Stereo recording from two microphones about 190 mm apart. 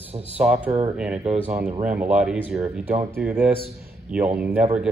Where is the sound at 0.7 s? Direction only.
30° right (ahead or behind).